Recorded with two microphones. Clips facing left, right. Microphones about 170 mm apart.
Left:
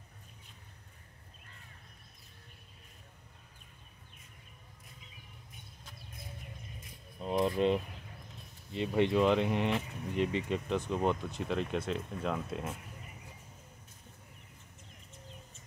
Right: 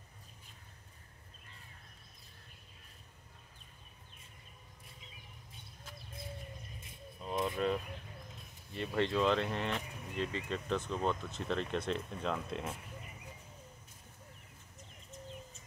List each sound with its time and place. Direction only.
7.2 s speech: 25° left (ahead or behind); by 12.7 s 5° left (ahead or behind)